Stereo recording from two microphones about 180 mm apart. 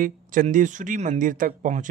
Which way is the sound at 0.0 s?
50° right (ahead or behind).